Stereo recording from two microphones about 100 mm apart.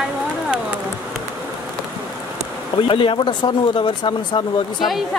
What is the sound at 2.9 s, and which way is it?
Speech, 60° left (ahead or behind).